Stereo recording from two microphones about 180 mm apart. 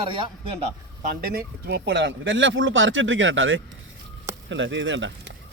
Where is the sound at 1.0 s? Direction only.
55° right (ahead or behind).